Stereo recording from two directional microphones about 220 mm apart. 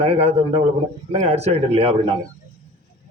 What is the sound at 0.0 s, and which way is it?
A man's voice, 25° right (ahead or behind).